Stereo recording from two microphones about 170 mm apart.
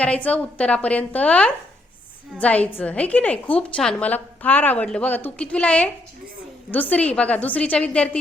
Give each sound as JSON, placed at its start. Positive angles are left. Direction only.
{"t": 0.0, "sound": "a woman's voice", "side_deg": 5}